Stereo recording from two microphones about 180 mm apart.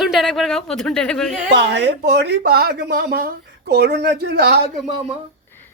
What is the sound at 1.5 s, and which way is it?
Speech, 75° right (ahead or behind).